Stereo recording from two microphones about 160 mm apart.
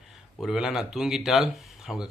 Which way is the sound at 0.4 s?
Centre (ahead or behind).